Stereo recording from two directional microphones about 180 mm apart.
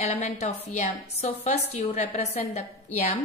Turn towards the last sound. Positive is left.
turn(degrees=40)  # may be behind; listen again after turning